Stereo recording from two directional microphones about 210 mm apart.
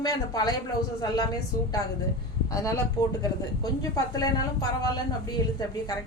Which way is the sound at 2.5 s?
15° left (ahead or behind).